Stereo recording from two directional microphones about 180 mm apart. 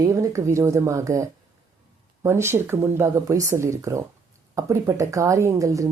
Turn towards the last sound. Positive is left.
turn(degrees=-20)  # may be behind; listen again after turning